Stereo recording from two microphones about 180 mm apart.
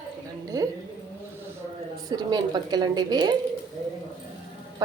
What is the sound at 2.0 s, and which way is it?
A woman's voice, 20° right (ahead or behind).